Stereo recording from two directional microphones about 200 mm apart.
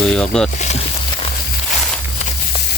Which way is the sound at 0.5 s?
35° left (ahead or behind).